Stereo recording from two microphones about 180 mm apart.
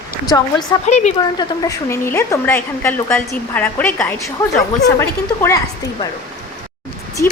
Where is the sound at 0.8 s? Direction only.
40° left (ahead or behind).